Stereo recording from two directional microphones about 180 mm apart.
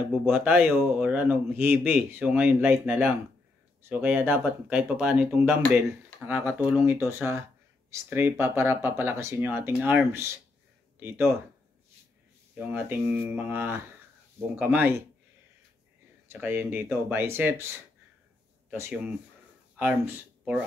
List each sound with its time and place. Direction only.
0.1 s speech: 5° right (ahead or behind)
5.6 s speech: 5° left (ahead or behind)
6.2 s speech: 10° right (ahead or behind)
12.5 s speech: 10° right (ahead or behind)
16.3 s speech: 10° right (ahead or behind)
18.7 s speech: 10° right (ahead or behind)